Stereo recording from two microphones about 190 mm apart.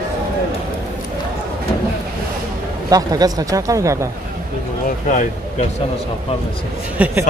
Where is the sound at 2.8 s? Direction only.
20° right (ahead or behind).